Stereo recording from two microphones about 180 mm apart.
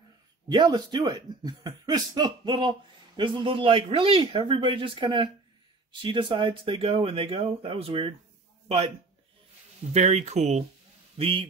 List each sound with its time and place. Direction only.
0.5 s speech: 25° right (ahead or behind)
9.9 s speech: 40° right (ahead or behind)